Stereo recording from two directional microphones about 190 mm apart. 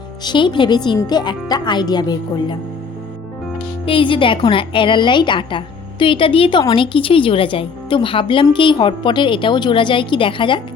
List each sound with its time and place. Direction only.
0.3 s a woman's voice: 25° left (ahead or behind)
3.8 s a woman's voice: 25° left (ahead or behind)